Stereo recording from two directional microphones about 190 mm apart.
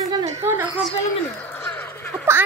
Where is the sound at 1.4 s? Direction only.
10° left (ahead or behind).